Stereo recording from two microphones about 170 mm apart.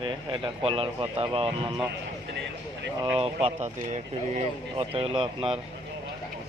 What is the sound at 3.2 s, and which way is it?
Speech, 35° right (ahead or behind).